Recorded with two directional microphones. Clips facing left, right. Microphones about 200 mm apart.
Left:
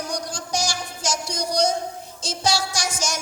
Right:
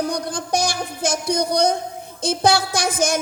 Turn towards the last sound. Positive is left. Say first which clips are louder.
# right 7 dB
turn(degrees=-55)  # may be behind; listen again after turning